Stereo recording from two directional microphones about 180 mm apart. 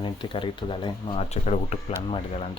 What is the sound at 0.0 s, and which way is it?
Speech, 25° left (ahead or behind).